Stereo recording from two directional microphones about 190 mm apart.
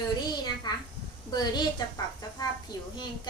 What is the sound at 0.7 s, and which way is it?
A child's voice, 20° left (ahead or behind).